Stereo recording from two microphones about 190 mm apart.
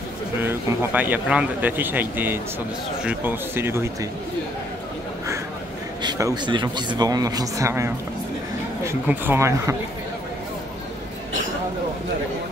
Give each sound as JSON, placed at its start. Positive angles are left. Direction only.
{"t": 0.4, "sound": "speech", "side_deg": -10}
{"t": 6.0, "sound": "speech", "side_deg": -20}